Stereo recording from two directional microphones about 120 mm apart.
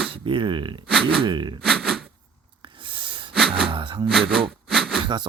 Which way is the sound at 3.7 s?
40° right (ahead or behind).